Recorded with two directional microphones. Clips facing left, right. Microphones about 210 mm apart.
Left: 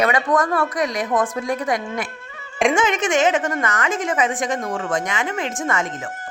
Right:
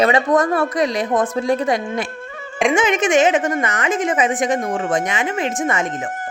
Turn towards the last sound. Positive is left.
turn(degrees=-20)  # may be behind; listen again after turning